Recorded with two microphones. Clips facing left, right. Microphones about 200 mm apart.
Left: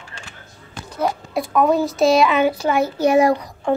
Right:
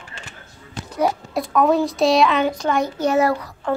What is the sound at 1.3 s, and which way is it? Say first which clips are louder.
A child's voice: left 2 dB; centre (ahead or behind).